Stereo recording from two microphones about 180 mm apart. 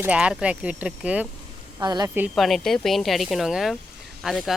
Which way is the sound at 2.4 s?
Centre (ahead or behind).